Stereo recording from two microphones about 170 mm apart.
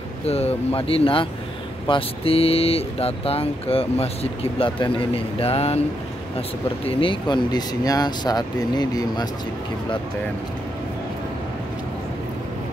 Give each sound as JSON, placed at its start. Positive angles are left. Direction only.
{"t": 0.2, "sound": "speech", "side_deg": 35}
{"t": 6.9, "sound": "speech", "side_deg": 30}